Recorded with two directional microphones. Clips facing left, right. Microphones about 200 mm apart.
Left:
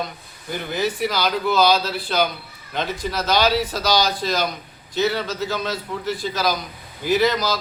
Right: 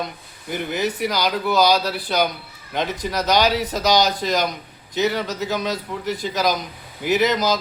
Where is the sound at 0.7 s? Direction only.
15° right (ahead or behind).